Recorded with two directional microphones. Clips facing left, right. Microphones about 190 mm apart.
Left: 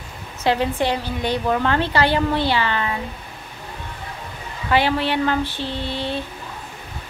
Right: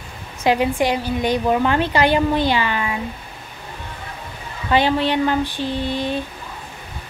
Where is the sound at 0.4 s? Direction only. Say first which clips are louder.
Right 2 dB; 10° right (ahead or behind).